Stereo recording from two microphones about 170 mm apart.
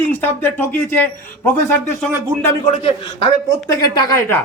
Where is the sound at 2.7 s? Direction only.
35° left (ahead or behind).